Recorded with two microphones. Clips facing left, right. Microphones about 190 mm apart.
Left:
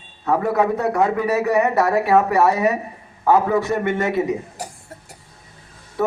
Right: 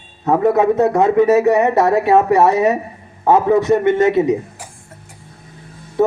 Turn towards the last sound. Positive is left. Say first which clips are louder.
# right 6 dB
turn(degrees=-20)  # may be behind; listen again after turning